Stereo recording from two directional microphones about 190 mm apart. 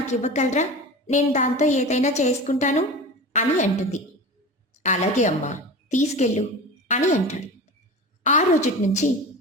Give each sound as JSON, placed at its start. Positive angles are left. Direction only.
{"t": 0.1, "sound": "a woman's voice", "side_deg": 40}